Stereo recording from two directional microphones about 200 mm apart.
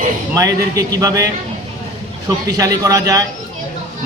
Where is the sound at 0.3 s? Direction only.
15° right (ahead or behind).